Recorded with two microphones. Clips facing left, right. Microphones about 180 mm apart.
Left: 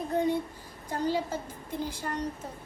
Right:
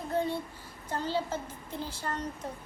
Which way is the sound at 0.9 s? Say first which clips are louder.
Left 2 dB; 10° left (ahead or behind).